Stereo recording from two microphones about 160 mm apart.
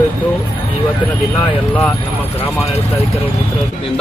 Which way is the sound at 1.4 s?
10° left (ahead or behind).